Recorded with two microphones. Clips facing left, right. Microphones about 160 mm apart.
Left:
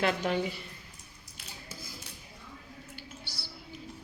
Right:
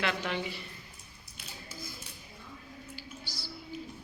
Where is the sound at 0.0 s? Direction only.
40° left (ahead or behind).